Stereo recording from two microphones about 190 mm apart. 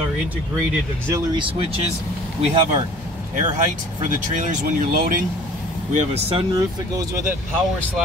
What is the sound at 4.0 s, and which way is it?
Speech, 40° right (ahead or behind).